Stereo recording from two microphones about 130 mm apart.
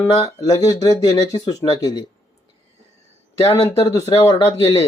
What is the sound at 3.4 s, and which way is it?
Speech, 50° left (ahead or behind).